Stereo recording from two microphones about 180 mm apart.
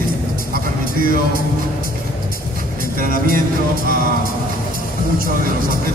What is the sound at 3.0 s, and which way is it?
Speech, 50° right (ahead or behind).